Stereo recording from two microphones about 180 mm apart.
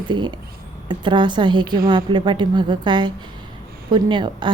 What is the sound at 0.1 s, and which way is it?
A woman's voice, 25° right (ahead or behind).